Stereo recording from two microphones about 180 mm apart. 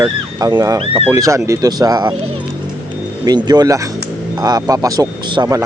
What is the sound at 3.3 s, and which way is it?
Speech, 25° right (ahead or behind).